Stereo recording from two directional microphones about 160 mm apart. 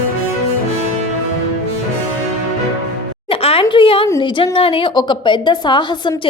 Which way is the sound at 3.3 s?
35° left (ahead or behind).